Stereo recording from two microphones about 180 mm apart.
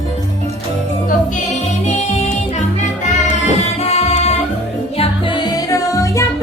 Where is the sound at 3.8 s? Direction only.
35° left (ahead or behind).